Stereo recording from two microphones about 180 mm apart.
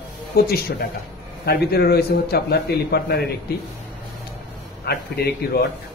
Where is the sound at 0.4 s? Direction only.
55° left (ahead or behind).